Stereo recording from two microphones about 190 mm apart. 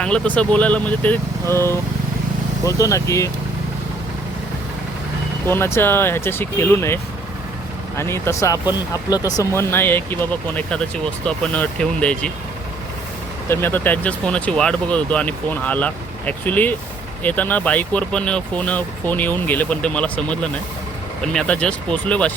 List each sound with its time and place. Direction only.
0.0 s speech: 5° left (ahead or behind)
5.5 s speech: 15° left (ahead or behind)
13.5 s speech: 10° left (ahead or behind)